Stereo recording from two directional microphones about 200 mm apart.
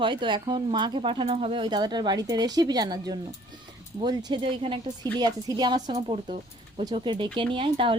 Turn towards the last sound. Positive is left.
turn(degrees=-25)  # may be behind; listen again after turning